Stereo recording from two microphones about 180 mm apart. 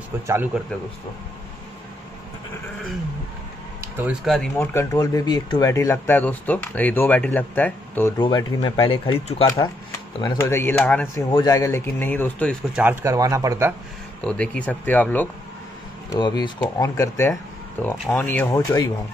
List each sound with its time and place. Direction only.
3.9 s speech: 5° right (ahead or behind)
4.6 s speech: 15° left (ahead or behind)
8.2 s speech: 25° left (ahead or behind)
10.2 s speech: 15° left (ahead or behind)
11.2 s speech: 25° left (ahead or behind); by 12.5 s 10° left (ahead or behind)
12.7 s speech: 10° right (ahead or behind)
14.2 s speech: 5° left (ahead or behind)
16.1 s speech: 25° left (ahead or behind)
17.3 s a sound: 10° left (ahead or behind)
18.0 s speech: 10° left (ahead or behind)